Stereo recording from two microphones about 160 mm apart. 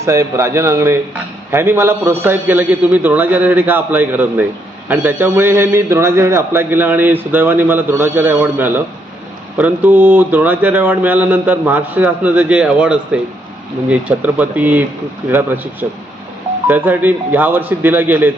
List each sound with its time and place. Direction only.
0.0 s speech: 15° right (ahead or behind)